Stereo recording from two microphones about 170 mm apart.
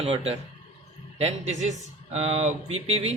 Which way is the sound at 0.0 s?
35° right (ahead or behind).